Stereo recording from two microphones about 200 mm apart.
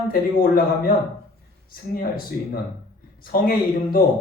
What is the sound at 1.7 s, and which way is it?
A man's voice, 50° left (ahead or behind).